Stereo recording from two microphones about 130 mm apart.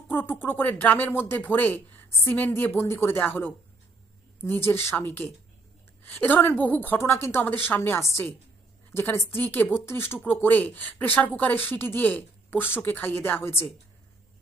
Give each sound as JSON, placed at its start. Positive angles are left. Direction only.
{"t": 0.1, "sound": "speech", "side_deg": 15}